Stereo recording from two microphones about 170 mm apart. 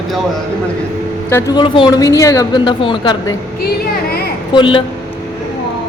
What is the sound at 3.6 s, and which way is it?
Speech, 65° left (ahead or behind).